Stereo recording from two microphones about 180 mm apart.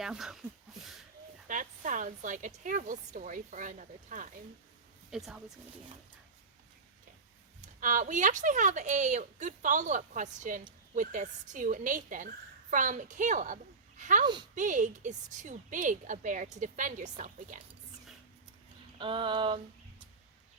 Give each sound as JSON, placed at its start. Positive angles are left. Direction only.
{"t": 0.0, "sound": "speech", "side_deg": -5}
{"t": 1.5, "sound": "a woman's voice", "side_deg": -45}
{"t": 5.1, "sound": "speech", "side_deg": 0}
{"t": 7.6, "sound": "a woman's voice", "side_deg": -45}
{"t": 18.9, "sound": "a sound", "side_deg": -30}